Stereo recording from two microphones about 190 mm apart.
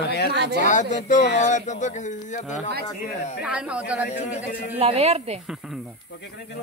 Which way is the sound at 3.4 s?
5° right (ahead or behind).